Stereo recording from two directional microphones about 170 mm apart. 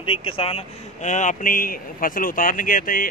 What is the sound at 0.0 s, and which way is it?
Speech, 30° left (ahead or behind).